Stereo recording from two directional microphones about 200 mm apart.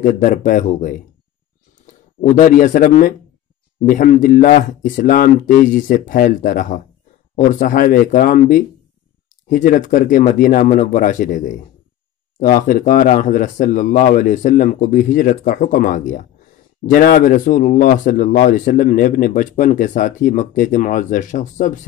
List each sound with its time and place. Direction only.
0.0 s speech: 40° left (ahead or behind)
12.6 s speech: 40° left (ahead or behind)